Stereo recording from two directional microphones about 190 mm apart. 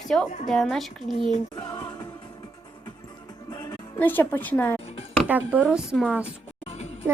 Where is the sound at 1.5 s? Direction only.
20° left (ahead or behind).